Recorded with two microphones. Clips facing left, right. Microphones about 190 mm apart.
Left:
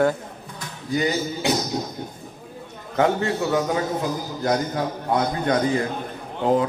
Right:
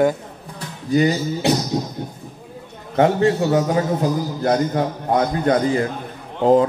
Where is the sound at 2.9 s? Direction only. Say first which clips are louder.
Right 5 dB; 30° right (ahead or behind).